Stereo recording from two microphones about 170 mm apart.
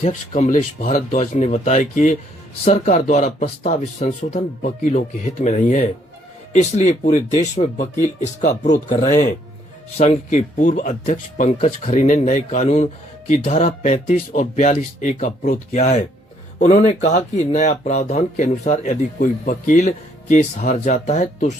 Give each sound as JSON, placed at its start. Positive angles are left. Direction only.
{"t": 0.0, "sound": "speech", "side_deg": 40}
{"t": 10.0, "sound": "speech", "side_deg": 45}